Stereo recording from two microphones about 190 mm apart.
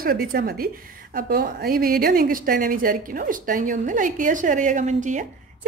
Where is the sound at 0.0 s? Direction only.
50° right (ahead or behind).